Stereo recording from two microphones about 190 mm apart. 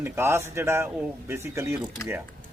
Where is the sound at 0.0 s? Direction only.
15° right (ahead or behind).